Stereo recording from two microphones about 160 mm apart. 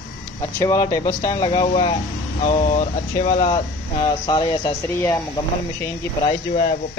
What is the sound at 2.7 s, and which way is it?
Speech, 45° left (ahead or behind).